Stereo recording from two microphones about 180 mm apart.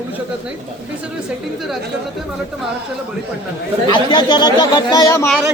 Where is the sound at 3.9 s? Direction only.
25° left (ahead or behind).